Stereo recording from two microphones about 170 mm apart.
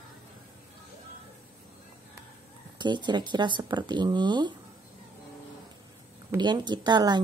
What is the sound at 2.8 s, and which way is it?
Speech, 25° right (ahead or behind).